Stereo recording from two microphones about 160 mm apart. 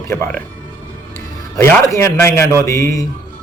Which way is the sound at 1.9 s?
15° left (ahead or behind).